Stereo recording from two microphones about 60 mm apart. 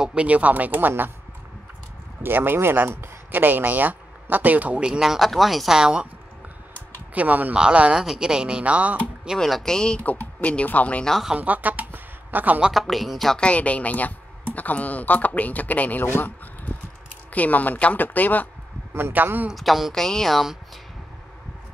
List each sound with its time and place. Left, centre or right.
0.0 s speech: centre
2.2 s speech: right
4.8 s speech: centre
7.2 s speech: right
9.4 s speech: centre
10.0 s speech: left
11.3 s speech: right
12.7 s speech: centre
13.4 s speech: left
17.3 s speech: left
18.9 s speech: right
19.5 s speech: centre